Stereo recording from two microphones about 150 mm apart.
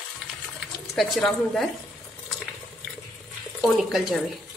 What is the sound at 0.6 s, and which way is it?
Speech, centre (ahead or behind).